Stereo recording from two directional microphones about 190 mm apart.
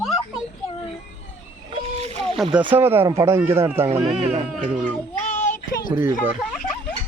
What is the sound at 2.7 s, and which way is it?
Speech, 10° right (ahead or behind).